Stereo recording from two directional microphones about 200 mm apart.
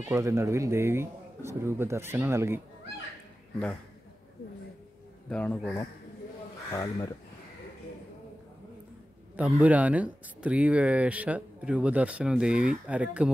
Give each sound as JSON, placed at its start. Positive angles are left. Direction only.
{"t": 0.0, "sound": "speech", "side_deg": -15}
{"t": 5.3, "sound": "speech", "side_deg": 5}
{"t": 6.7, "sound": "speech", "side_deg": 15}
{"t": 9.4, "sound": "speech", "side_deg": -5}